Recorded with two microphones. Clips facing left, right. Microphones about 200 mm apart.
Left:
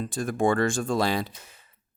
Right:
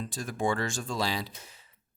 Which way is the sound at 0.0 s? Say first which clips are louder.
Left 6 dB; 55° left (ahead or behind).